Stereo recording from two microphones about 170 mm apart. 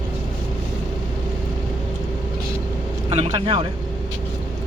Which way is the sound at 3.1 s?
35° right (ahead or behind).